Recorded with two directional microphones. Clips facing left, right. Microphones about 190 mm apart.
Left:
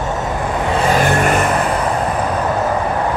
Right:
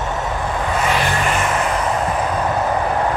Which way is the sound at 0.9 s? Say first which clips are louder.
Left 8 dB; 50° left (ahead or behind).